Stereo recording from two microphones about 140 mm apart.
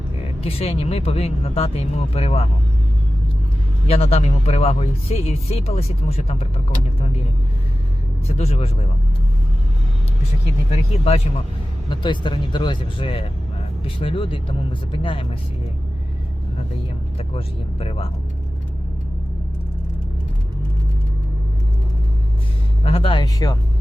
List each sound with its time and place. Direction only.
0.4 s speech: 45° left (ahead or behind)
3.8 s speech: 45° left (ahead or behind)
8.3 s speech: 45° left (ahead or behind)
10.7 s speech: 45° left (ahead or behind)
11.9 s speech: 35° left (ahead or behind)
17.2 s speech: 45° left (ahead or behind)
22.8 s speech: 45° left (ahead or behind)
23.2 s speech: 25° left (ahead or behind)